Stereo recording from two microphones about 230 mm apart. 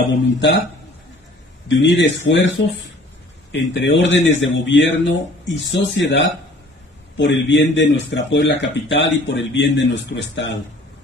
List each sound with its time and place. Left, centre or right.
0.1 s speech: left
1.7 s speech: left